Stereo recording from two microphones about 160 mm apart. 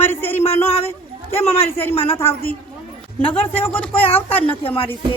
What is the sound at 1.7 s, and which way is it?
Speech, 15° left (ahead or behind).